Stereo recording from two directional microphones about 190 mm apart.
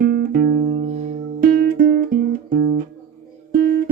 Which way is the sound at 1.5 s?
50° right (ahead or behind).